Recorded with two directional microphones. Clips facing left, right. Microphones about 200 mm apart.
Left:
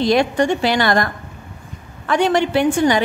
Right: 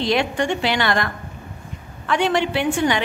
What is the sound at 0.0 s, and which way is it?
A woman's voice, 40° left (ahead or behind).